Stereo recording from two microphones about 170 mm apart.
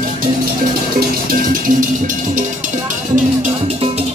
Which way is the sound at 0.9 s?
55° right (ahead or behind).